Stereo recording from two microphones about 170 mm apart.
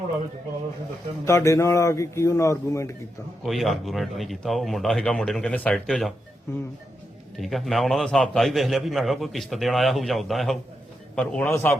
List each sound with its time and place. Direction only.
1.2 s speech: 15° left (ahead or behind)
3.4 s a man's voice: centre (ahead or behind)
7.3 s a man's voice: centre (ahead or behind)